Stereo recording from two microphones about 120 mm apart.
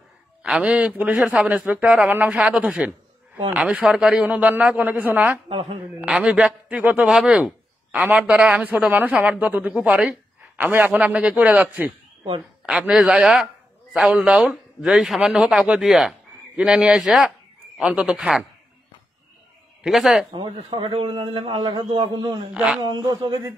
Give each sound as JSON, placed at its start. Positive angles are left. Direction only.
{"t": 0.4, "sound": "a man's voice", "side_deg": -10}
{"t": 5.5, "sound": "a man's voice", "side_deg": -50}
{"t": 5.9, "sound": "a man's voice", "side_deg": -10}
{"t": 19.8, "sound": "a man's voice", "side_deg": -5}
{"t": 20.3, "sound": "a man's voice", "side_deg": -45}
{"t": 22.5, "sound": "a man's voice", "side_deg": -10}
{"t": 22.8, "sound": "speech", "side_deg": -35}